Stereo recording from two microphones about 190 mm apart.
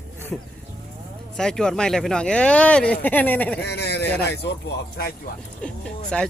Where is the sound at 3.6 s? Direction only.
60° left (ahead or behind).